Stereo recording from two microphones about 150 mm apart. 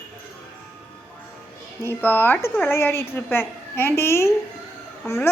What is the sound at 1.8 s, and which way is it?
Speech, 15° left (ahead or behind).